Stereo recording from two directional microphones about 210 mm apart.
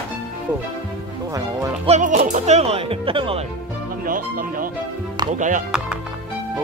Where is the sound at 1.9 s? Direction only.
35° right (ahead or behind).